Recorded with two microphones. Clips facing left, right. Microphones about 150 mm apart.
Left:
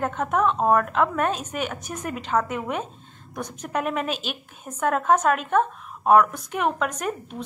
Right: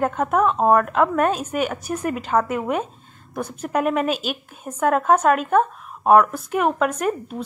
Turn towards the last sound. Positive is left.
turn(degrees=-5)  # may be behind; listen again after turning